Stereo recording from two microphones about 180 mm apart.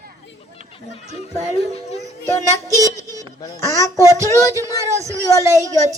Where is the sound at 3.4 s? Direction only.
20° left (ahead or behind).